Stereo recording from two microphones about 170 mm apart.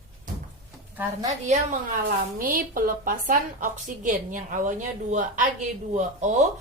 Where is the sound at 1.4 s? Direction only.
45° right (ahead or behind).